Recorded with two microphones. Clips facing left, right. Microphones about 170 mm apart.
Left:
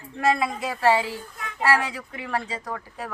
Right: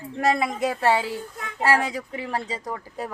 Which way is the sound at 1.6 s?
40° right (ahead or behind).